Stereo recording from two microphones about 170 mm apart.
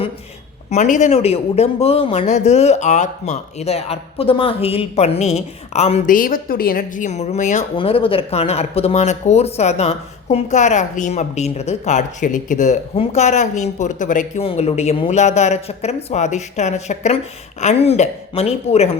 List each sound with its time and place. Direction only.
0.7 s a man's voice: 45° left (ahead or behind)
7.8 s a man's voice: 35° left (ahead or behind); by 14.4 s 50° left (ahead or behind)
14.4 s a man's voice: 35° left (ahead or behind)